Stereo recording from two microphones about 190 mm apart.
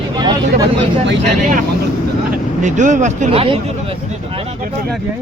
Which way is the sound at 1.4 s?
45° right (ahead or behind).